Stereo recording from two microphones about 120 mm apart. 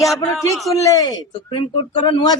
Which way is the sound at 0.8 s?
30° left (ahead or behind).